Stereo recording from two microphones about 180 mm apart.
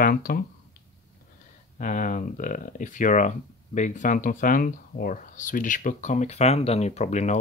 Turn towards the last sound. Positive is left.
turn(degrees=40)  # may be behind; listen again after turning